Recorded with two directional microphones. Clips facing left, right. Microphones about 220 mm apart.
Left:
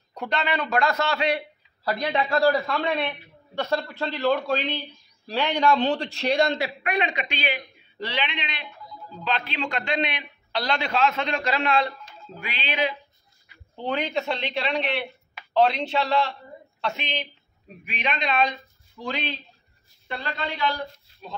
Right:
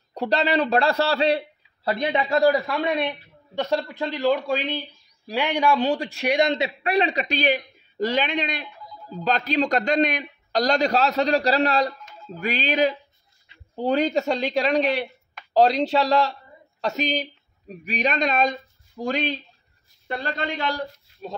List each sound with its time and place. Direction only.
0.1 s a man's voice: 35° right (ahead or behind); by 6.7 s 20° right (ahead or behind)
6.8 s a man's voice: 35° right (ahead or behind)
12.4 s music: 45° right (ahead or behind)
13.7 s a man's voice: 40° right (ahead or behind)